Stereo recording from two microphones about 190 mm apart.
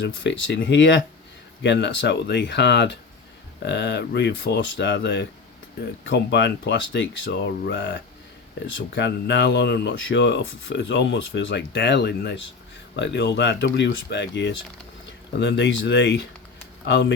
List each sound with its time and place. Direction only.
0.0 s speech: 75° left (ahead or behind)